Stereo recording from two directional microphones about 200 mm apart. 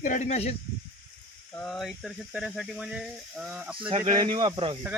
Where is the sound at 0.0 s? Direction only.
35° left (ahead or behind).